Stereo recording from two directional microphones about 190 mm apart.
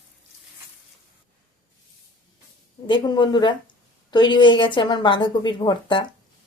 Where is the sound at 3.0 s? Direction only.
25° left (ahead or behind).